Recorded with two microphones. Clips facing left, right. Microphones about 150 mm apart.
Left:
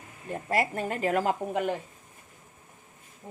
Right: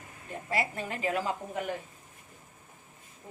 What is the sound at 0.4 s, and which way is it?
Speech, 45° left (ahead or behind).